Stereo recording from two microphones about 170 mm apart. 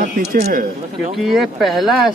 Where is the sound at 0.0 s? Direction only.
55° right (ahead or behind).